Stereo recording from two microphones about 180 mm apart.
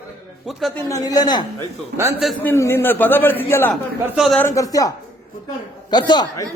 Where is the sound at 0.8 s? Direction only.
20° left (ahead or behind).